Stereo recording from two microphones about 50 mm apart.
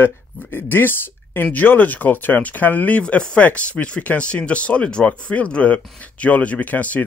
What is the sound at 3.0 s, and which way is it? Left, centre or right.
Speech, left.